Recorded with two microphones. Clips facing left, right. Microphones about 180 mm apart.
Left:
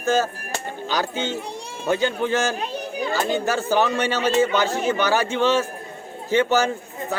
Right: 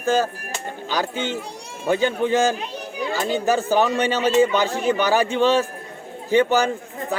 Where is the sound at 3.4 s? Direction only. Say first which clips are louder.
Right 5 dB; 15° right (ahead or behind).